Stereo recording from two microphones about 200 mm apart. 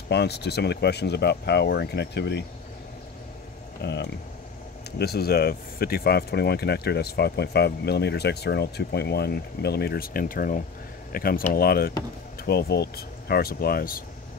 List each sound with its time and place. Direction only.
0.1 s speech: 55° left (ahead or behind)
3.8 s speech: 60° left (ahead or behind)